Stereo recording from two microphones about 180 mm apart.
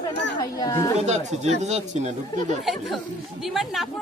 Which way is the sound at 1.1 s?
40° right (ahead or behind).